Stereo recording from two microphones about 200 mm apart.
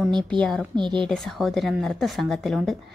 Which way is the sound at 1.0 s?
Centre (ahead or behind).